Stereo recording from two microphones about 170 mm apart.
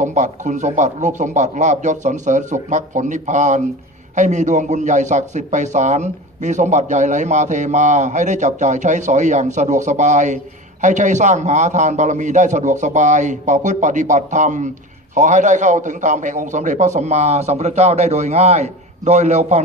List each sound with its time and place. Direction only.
0.0 s a man's voice: 45° right (ahead or behind)